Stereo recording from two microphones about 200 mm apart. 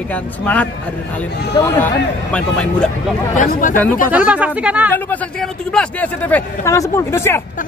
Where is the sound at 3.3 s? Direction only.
40° left (ahead or behind).